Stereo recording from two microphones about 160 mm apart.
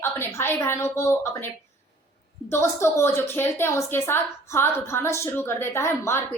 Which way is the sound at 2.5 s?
15° left (ahead or behind).